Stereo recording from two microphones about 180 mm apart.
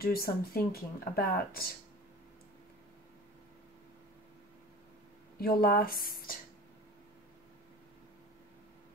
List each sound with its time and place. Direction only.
0.0 s speech: 55° left (ahead or behind)
5.4 s speech: 55° left (ahead or behind)